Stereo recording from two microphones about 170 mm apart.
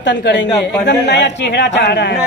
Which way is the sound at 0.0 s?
90° left.